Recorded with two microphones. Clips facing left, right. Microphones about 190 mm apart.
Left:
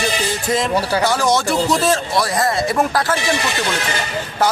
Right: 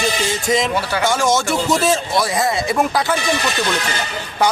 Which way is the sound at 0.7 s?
35° left (ahead or behind).